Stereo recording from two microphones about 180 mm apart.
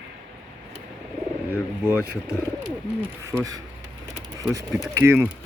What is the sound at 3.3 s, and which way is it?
Speech, 20° right (ahead or behind).